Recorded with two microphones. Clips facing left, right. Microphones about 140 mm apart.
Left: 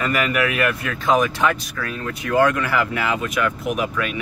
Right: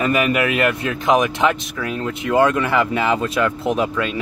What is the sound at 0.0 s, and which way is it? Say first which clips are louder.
Speech: right 3 dB; 20° right (ahead or behind).